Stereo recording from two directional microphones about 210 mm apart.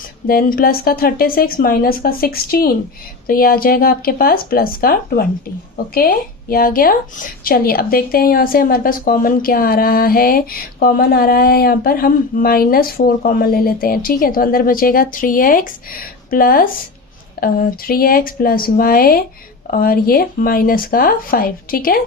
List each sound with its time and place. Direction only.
0.3 s speech: 45° left (ahead or behind)